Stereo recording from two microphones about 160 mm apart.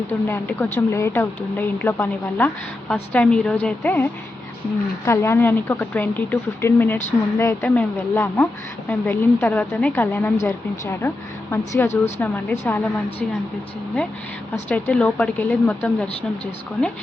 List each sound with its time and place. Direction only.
0.1 s a woman's voice: 10° left (ahead or behind)
11.9 s a woman's voice: 45° left (ahead or behind)
12.2 s a woman's voice: 10° left (ahead or behind)
14.5 s a woman's voice: 10° left (ahead or behind)